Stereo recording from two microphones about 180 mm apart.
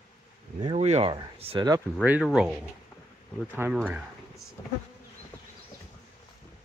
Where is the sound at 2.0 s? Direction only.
5° right (ahead or behind).